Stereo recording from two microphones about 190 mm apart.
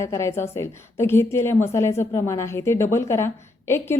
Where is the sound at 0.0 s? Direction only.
15° left (ahead or behind).